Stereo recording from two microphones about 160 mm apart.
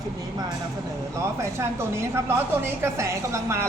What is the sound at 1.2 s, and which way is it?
A woman's voice, 15° right (ahead or behind).